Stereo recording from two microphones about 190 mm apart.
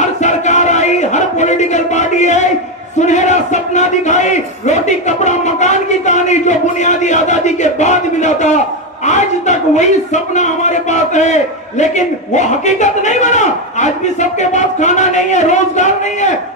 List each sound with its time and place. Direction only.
0.0 s battle cry: 40° left (ahead or behind)
3.0 s a man's voice: 40° left (ahead or behind)